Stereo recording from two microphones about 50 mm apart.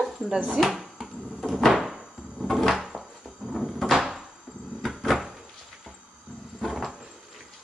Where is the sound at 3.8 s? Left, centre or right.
Centre.